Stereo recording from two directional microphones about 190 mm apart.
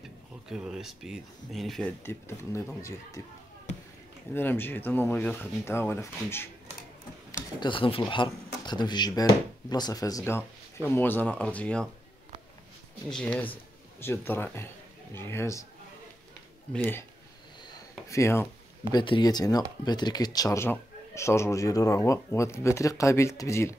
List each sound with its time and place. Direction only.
0.5 s speech: 5° right (ahead or behind)
2.0 s speech: 10° left (ahead or behind)
4.3 s speech: 10° left (ahead or behind)
7.6 s speech: 25° left (ahead or behind); by 11.9 s 5° left (ahead or behind)
13.1 s speech: 5° left (ahead or behind)
16.7 s speech: 10° left (ahead or behind)